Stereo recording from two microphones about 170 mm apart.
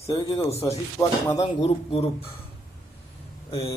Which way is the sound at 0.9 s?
15° left (ahead or behind).